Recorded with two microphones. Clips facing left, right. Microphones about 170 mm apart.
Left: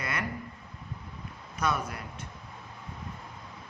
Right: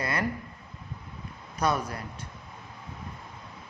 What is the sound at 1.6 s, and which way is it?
Speech, 35° right (ahead or behind).